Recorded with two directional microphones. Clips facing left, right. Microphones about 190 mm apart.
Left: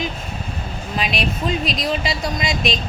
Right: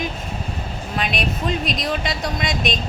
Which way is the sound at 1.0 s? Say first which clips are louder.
Left 1 dB; centre (ahead or behind).